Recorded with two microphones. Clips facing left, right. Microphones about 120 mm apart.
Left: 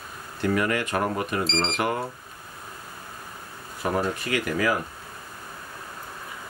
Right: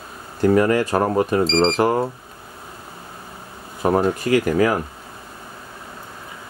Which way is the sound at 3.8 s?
40° right (ahead or behind).